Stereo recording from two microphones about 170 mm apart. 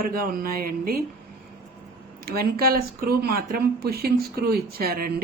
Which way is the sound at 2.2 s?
65° right (ahead or behind).